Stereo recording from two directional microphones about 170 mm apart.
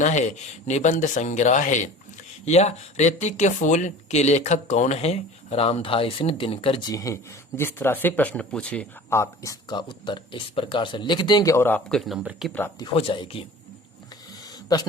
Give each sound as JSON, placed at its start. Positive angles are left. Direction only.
{"t": 0.0, "sound": "speech", "side_deg": 45}
{"t": 6.9, "sound": "speech", "side_deg": 20}
{"t": 12.8, "sound": "speech", "side_deg": 30}